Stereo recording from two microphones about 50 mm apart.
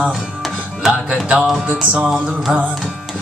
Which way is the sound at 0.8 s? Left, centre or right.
Centre.